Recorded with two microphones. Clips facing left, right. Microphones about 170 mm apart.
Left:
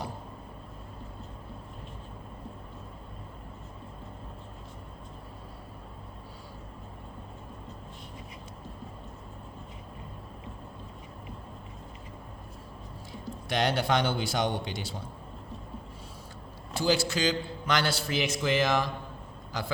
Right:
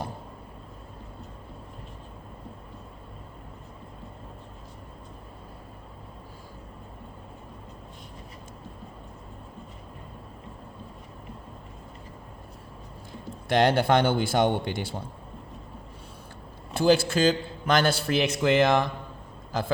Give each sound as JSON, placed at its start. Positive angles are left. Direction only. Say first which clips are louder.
{"t": 13.5, "sound": "a man's voice", "louder": "right 6 dB", "side_deg": -55}
{"t": 16.7, "sound": "a man's voice", "louder": "right 6 dB", "side_deg": -55}